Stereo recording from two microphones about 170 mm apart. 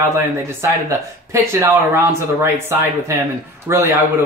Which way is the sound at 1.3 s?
15° right (ahead or behind).